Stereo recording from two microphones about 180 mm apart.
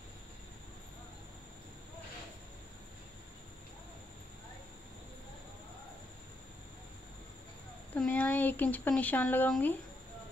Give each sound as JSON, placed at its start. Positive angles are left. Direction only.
{"t": 7.9, "sound": "speech", "side_deg": 10}